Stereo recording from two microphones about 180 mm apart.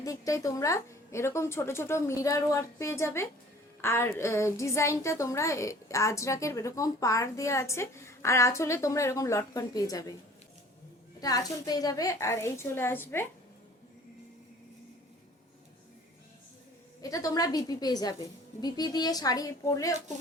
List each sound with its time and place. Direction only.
0.0 s a woman's voice: 20° left (ahead or behind)
11.2 s a woman's voice: 20° left (ahead or behind)
17.0 s a woman's voice: 20° left (ahead or behind)